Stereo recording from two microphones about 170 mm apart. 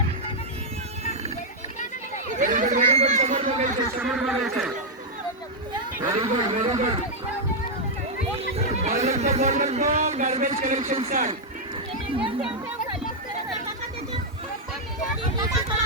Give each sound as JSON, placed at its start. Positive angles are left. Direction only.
{"t": 2.4, "sound": "chatter", "side_deg": -50}
{"t": 4.0, "sound": "speech", "side_deg": 0}
{"t": 6.1, "sound": "speech", "side_deg": -30}
{"t": 8.5, "sound": "speech", "side_deg": -40}